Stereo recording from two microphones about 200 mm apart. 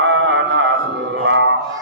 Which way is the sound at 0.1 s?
65° right (ahead or behind).